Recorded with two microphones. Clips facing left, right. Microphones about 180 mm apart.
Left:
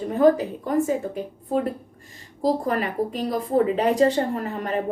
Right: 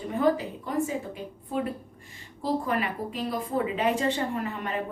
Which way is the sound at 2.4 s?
40° left (ahead or behind).